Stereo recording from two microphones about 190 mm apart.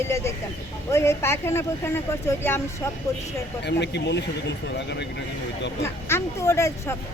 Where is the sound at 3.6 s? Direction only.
65° left (ahead or behind).